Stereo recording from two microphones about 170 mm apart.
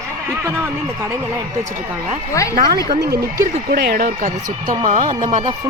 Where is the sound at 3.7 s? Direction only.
65° right (ahead or behind).